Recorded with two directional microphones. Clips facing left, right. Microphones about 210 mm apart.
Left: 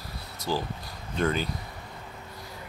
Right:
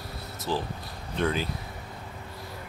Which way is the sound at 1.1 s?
Centre (ahead or behind).